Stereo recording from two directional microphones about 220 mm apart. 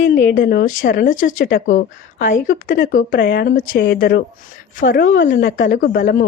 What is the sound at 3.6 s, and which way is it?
A woman's voice, 55° left (ahead or behind).